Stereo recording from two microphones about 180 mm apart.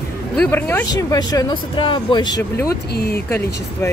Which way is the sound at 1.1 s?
20° left (ahead or behind).